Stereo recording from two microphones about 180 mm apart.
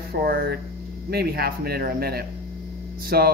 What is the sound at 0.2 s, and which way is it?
Speech, 60° right (ahead or behind).